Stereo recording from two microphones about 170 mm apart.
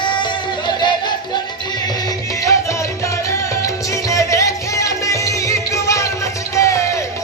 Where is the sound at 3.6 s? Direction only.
20° left (ahead or behind).